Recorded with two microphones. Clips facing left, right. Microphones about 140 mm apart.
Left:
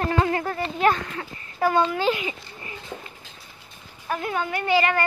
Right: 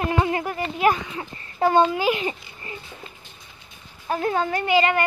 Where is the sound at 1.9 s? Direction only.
10° right (ahead or behind).